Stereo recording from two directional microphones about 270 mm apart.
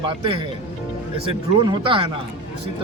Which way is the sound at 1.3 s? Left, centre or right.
Centre.